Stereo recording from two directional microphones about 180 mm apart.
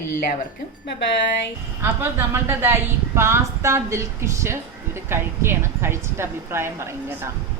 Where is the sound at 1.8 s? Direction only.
15° right (ahead or behind).